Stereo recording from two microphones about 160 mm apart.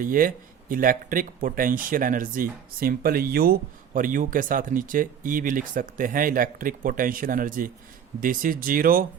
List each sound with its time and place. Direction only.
0.0 s speech: 60° right (ahead or behind)